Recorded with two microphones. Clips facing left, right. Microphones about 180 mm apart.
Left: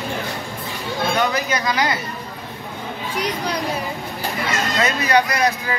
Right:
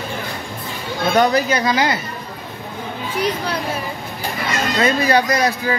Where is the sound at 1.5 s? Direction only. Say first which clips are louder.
Right 3 dB; 30° right (ahead or behind).